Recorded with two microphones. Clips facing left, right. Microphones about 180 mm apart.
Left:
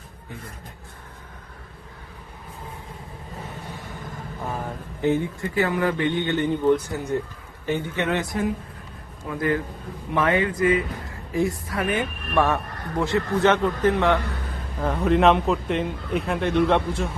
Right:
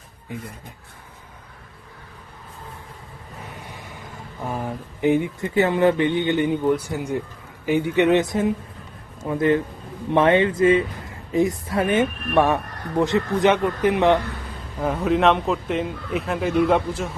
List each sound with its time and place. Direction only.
4.9 s a woman's voice: 15° right (ahead or behind)
14.8 s a man's voice: 5° right (ahead or behind)